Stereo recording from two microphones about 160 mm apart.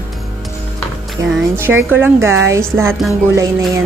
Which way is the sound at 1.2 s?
20° right (ahead or behind).